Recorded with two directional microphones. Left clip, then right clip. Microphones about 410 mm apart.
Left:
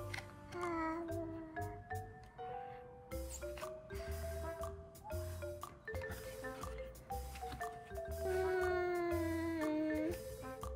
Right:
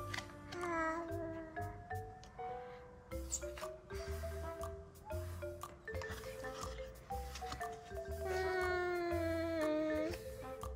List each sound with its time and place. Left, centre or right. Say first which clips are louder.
0.0 s music: right 2 dB; centre
3.1 s music: right 1 dB; centre
7.1 s music: right 2 dB; centre